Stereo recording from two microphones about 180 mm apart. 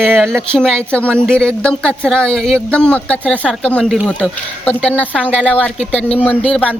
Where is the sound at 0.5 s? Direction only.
5° left (ahead or behind).